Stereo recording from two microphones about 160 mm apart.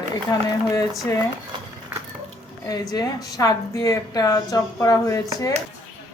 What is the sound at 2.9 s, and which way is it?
Speech, 25° left (ahead or behind).